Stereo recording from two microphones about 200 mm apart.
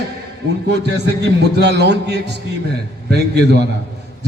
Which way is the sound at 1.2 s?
55° right (ahead or behind).